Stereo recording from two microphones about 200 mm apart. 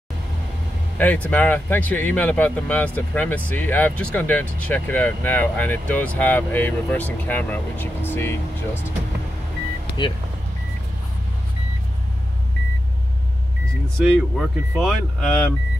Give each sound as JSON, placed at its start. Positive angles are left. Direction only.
{"t": 0.9, "sound": "speech", "side_deg": 10}
{"t": 10.0, "sound": "speech", "side_deg": 20}
{"t": 13.9, "sound": "speech", "side_deg": 0}